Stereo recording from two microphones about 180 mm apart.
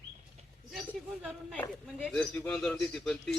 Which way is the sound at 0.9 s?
5° left (ahead or behind).